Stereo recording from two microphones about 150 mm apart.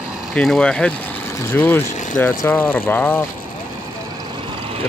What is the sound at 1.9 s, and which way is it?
Vehicle, 55° left (ahead or behind).